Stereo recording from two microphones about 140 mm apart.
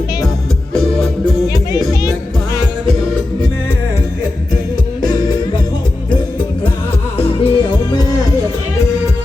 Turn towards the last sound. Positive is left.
turn(degrees=45)  # may be behind; listen again after turning